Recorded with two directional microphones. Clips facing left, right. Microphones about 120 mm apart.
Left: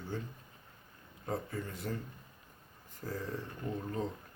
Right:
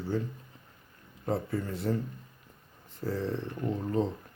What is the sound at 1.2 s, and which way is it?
Speech, 35° right (ahead or behind).